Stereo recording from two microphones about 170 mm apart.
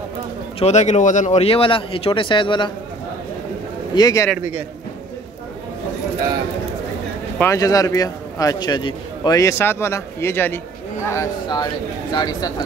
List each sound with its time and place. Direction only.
0.6 s speech: 40° left (ahead or behind)
3.9 s a man's voice: 20° left (ahead or behind)
4.4 s a man's voice: 10° right (ahead or behind)
7.3 s a man's voice: 15° left (ahead or behind)